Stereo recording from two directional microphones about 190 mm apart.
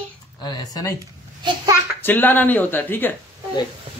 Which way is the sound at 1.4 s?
25° right (ahead or behind).